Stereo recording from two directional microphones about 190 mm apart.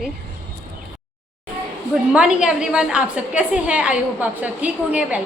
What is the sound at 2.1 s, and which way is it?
A woman's voice, 5° right (ahead or behind).